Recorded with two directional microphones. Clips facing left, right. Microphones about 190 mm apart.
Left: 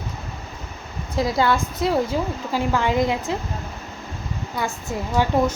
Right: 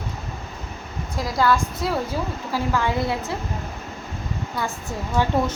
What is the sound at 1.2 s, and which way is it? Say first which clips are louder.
A woman's voice: left 1 dB; 25° left (ahead or behind).